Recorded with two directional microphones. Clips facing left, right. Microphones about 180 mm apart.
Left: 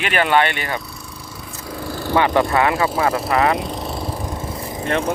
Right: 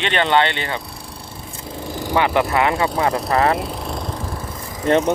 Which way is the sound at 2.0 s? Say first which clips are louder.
Left 1 dB; 15° right (ahead or behind).